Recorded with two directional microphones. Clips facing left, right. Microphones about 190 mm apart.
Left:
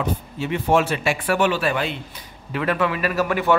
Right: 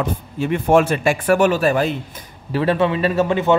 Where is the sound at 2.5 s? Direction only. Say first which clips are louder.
Right 5 dB; 30° right (ahead or behind).